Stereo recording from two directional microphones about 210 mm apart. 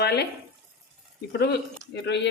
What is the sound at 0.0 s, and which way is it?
Speech, 50° left (ahead or behind).